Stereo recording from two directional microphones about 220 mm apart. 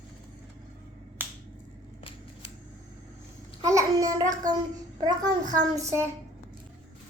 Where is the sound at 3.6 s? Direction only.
15° right (ahead or behind).